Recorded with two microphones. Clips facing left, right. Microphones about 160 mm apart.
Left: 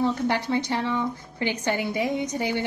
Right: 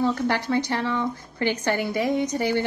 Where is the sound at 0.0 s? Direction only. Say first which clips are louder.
Right 1 dB; 20° left (ahead or behind).